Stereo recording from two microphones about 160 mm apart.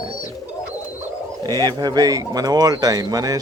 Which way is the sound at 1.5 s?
25° right (ahead or behind).